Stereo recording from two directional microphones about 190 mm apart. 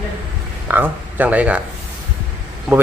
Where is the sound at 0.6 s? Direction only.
10° right (ahead or behind).